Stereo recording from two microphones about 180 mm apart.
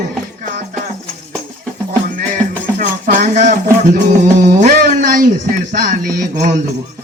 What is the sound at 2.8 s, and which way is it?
Music, 45° right (ahead or behind).